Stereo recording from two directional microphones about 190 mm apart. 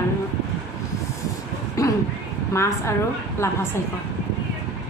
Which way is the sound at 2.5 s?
15° left (ahead or behind).